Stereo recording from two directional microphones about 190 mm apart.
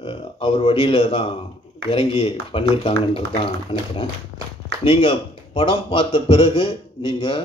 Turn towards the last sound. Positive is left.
turn(degrees=30)  # may be behind; listen again after turning